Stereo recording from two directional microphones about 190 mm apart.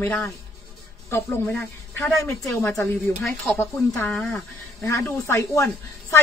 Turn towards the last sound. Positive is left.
turn(degrees=15)  # may be behind; listen again after turning